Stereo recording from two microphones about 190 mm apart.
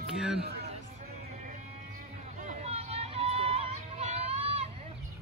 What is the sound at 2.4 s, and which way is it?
Music, 40° right (ahead or behind).